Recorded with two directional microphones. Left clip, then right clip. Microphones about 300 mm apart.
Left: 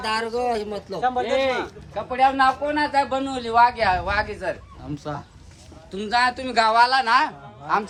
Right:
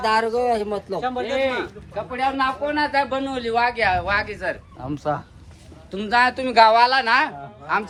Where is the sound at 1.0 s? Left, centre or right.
Left.